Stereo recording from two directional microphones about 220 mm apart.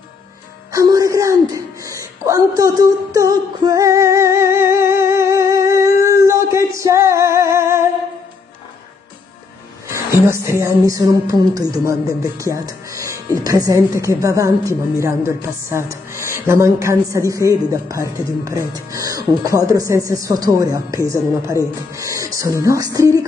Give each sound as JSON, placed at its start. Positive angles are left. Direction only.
{"t": 0.7, "sound": "a sound", "side_deg": -15}
{"t": 10.2, "sound": "music", "side_deg": -10}
{"t": 21.9, "sound": "speech", "side_deg": -15}